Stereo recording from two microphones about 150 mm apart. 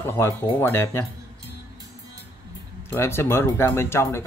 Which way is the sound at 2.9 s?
15° left (ahead or behind).